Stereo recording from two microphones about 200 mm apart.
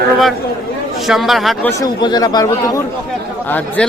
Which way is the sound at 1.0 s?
Centre (ahead or behind).